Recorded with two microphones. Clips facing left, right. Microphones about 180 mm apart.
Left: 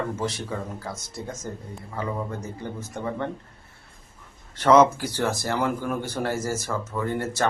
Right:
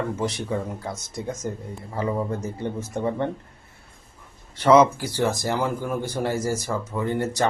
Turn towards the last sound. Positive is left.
turn(degrees=-15)  # may be behind; listen again after turning